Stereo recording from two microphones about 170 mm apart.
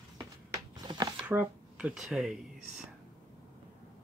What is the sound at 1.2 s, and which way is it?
Speech, 10° right (ahead or behind).